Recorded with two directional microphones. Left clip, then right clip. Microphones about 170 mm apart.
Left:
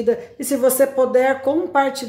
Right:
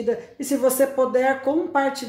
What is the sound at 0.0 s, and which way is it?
Speech, 15° left (ahead or behind).